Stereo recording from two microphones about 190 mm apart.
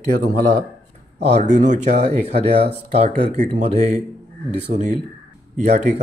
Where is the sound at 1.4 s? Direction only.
40° right (ahead or behind).